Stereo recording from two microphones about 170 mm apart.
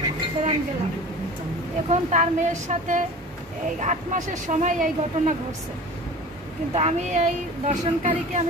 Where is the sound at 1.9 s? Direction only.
45° right (ahead or behind).